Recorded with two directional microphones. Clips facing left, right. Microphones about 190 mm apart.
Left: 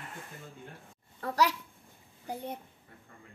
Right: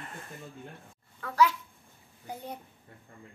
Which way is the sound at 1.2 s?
40° left (ahead or behind).